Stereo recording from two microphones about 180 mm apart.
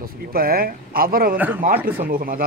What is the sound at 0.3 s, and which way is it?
A man's voice, 55° right (ahead or behind).